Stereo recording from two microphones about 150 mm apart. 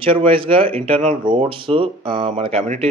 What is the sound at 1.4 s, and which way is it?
Speech, 35° right (ahead or behind).